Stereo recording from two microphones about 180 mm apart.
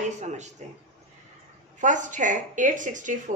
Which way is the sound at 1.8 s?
45° right (ahead or behind).